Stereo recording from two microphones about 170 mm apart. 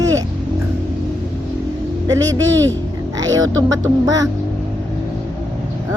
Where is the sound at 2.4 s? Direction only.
90° right.